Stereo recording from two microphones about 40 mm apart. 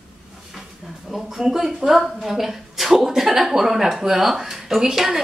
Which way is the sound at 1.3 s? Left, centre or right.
Centre.